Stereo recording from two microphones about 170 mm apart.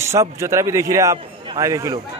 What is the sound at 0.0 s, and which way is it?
A man's voice, 15° right (ahead or behind).